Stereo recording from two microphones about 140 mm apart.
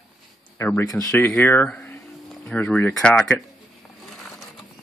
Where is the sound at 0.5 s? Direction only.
15° left (ahead or behind).